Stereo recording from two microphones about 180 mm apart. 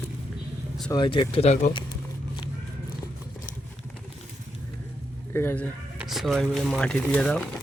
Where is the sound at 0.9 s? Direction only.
25° left (ahead or behind).